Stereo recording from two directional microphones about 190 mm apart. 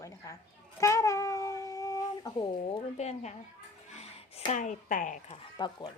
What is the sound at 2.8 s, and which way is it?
Speech, 35° left (ahead or behind).